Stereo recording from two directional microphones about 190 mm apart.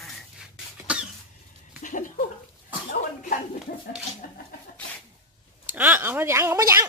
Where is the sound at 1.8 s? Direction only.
40° left (ahead or behind).